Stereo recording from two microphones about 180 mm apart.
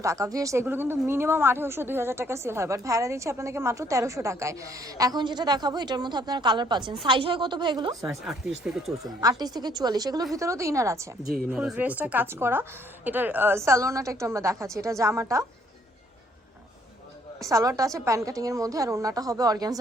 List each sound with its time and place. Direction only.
0.0 s speech: 15° right (ahead or behind)
8.0 s speech: 5° right (ahead or behind)
9.4 s a woman's voice: 20° right (ahead or behind)
11.3 s speech: 5° right (ahead or behind)
17.4 s a woman's voice: 15° right (ahead or behind)